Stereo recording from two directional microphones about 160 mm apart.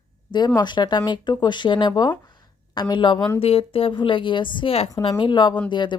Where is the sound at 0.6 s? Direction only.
30° left (ahead or behind).